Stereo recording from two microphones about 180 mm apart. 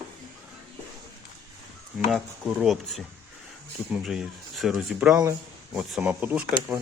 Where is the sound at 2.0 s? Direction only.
5° right (ahead or behind).